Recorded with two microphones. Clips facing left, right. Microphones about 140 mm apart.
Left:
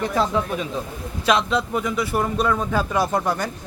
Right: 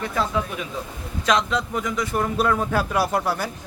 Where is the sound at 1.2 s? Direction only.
10° left (ahead or behind).